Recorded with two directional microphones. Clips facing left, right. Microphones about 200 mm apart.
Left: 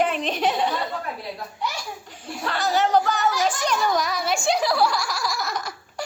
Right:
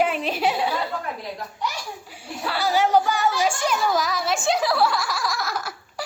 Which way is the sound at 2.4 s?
10° right (ahead or behind).